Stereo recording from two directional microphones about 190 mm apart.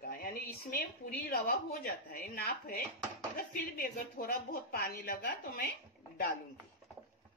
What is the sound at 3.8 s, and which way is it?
A woman's voice, 50° left (ahead or behind).